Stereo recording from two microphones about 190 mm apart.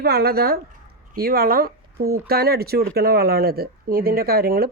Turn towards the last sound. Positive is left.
turn(degrees=-55)  # may be behind; listen again after turning